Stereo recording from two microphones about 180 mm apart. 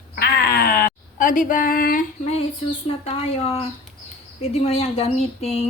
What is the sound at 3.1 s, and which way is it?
A woman's voice, 35° left (ahead or behind).